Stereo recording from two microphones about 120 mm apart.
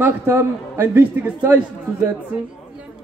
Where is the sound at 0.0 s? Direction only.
20° right (ahead or behind).